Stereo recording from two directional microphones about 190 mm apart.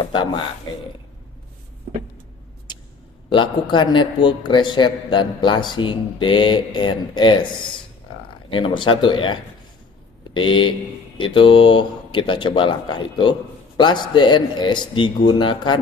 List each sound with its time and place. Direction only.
2.7 s a sound: 25° left (ahead or behind)
3.3 s speech: 25° left (ahead or behind)
8.5 s speech: 25° left (ahead or behind)